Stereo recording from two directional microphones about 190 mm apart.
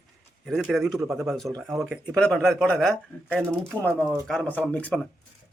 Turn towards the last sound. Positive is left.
turn(degrees=10)  # may be behind; listen again after turning